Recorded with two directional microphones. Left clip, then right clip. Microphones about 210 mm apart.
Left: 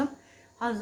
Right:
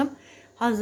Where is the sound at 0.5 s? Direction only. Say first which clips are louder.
Right 6 dB; 50° right (ahead or behind).